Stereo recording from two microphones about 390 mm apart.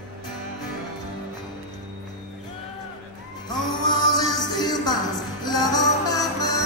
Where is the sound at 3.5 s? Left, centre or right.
Centre.